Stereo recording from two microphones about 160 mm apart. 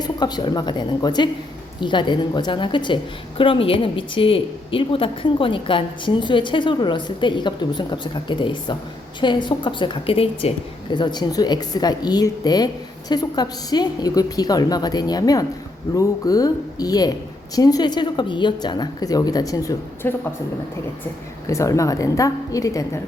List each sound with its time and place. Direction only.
0.0 s a woman's voice: 25° left (ahead or behind)
21.4 s a woman's voice: 20° left (ahead or behind)